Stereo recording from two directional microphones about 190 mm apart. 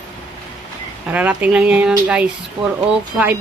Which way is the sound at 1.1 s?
5° right (ahead or behind).